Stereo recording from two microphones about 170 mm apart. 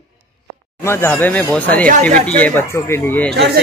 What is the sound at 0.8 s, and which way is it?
Speech, 15° left (ahead or behind).